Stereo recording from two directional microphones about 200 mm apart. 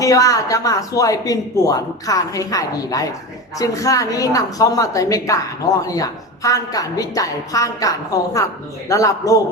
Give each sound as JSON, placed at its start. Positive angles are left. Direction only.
{"t": 0.0, "sound": "speech", "side_deg": 15}